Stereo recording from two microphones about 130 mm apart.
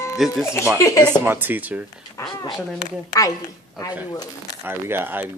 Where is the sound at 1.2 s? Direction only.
15° right (ahead or behind).